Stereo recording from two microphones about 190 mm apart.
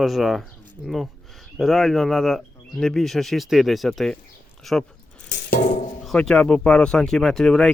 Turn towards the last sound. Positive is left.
turn(degrees=0)  # may be behind; listen again after turning